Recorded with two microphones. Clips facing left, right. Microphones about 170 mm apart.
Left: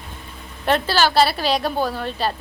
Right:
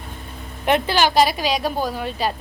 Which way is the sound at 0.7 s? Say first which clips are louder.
Right 1 dB; 15° right (ahead or behind).